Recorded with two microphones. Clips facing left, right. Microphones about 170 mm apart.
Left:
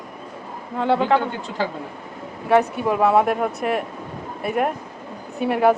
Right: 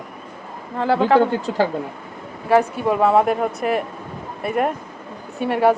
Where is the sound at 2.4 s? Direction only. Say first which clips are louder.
Right 1 dB; centre (ahead or behind).